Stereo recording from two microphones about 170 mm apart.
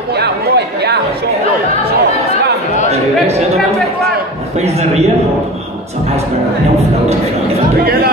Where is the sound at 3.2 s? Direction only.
40° right (ahead or behind).